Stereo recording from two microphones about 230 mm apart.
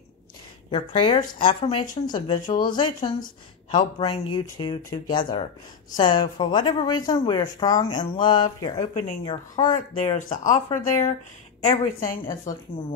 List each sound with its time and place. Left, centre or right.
0.7 s speech: left
10.2 s a woman's voice: left
11.6 s a woman's voice: left
12.5 s speech: centre